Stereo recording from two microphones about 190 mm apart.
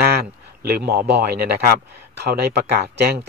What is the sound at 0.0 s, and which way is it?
A man's voice, 55° right (ahead or behind).